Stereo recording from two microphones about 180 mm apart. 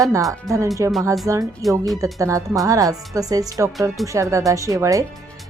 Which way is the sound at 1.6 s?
Centre (ahead or behind).